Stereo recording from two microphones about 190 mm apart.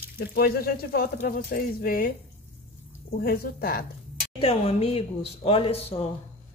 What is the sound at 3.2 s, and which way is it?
Speech, 50° left (ahead or behind).